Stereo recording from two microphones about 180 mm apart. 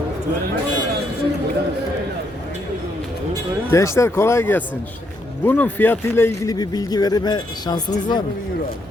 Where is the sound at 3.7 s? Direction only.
15° left (ahead or behind).